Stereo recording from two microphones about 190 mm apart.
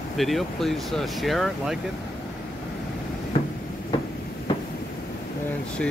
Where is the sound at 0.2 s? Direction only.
Centre (ahead or behind).